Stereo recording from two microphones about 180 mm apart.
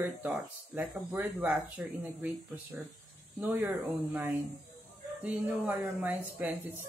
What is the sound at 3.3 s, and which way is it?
Speech, 10° right (ahead or behind).